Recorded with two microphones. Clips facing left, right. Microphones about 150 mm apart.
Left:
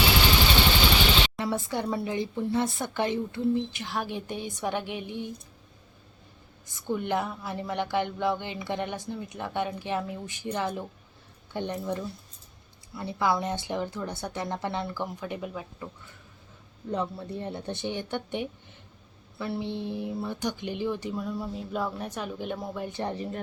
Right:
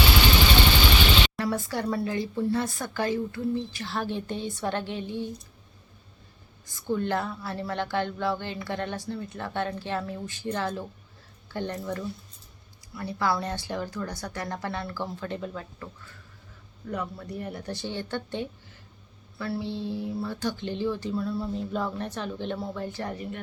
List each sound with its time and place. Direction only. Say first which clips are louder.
1.4 s speech: right 1 dB; 20° left (ahead or behind)
6.7 s speech: right 1 dB; 20° left (ahead or behind)
16.9 s speech: left 2 dB; 25° left (ahead or behind)